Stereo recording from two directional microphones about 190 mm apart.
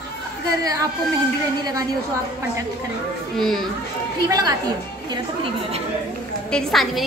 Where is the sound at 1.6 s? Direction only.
20° right (ahead or behind).